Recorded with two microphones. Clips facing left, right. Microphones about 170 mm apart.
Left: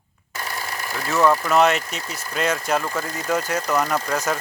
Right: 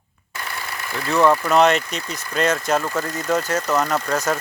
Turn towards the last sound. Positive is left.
turn(degrees=10)  # may be behind; listen again after turning